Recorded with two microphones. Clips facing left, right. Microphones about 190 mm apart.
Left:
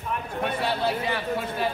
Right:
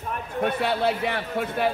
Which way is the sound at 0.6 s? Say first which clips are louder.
Right 1 dB; 60° right (ahead or behind).